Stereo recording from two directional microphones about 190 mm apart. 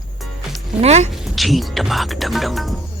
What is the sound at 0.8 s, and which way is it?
Speech, 35° right (ahead or behind).